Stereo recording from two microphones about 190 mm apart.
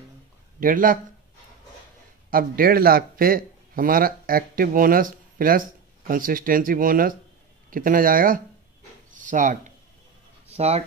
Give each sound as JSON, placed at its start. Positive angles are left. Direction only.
{"t": 0.6, "sound": "speech", "side_deg": -45}
{"t": 2.3, "sound": "speech", "side_deg": -50}
{"t": 9.1, "sound": "a sound", "side_deg": -45}
{"t": 10.5, "sound": "speech", "side_deg": -35}